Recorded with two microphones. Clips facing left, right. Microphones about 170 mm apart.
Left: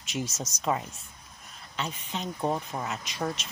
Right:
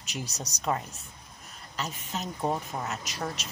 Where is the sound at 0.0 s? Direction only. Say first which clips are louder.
Left 4 dB; 35° right (ahead or behind).